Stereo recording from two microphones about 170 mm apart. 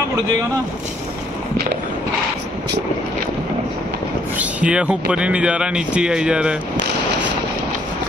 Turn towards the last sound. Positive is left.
turn(degrees=-5)  # may be behind; listen again after turning